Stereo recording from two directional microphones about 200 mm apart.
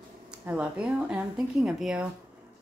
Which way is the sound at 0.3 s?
5° right (ahead or behind).